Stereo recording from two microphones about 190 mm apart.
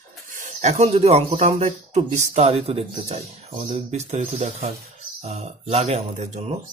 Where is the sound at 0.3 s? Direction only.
40° right (ahead or behind).